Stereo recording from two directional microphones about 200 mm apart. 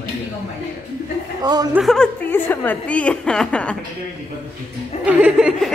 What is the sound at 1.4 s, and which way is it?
Speech, 20° right (ahead or behind).